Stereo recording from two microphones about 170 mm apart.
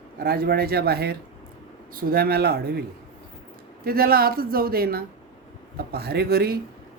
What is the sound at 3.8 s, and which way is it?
A man's voice, 60° right (ahead or behind).